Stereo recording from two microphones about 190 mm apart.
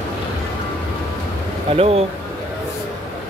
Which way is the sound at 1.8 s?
30° right (ahead or behind).